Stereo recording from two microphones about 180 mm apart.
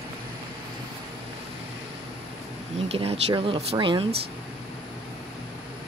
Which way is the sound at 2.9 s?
35° right (ahead or behind).